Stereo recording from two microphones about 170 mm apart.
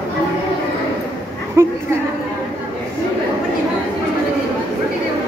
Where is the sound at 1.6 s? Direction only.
15° right (ahead or behind).